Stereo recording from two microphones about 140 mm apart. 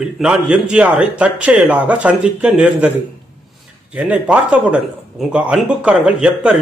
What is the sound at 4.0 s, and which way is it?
A man's voice, 10° right (ahead or behind).